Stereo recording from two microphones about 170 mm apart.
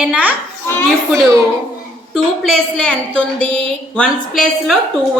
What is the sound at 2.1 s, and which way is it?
A woman's voice, 5° left (ahead or behind).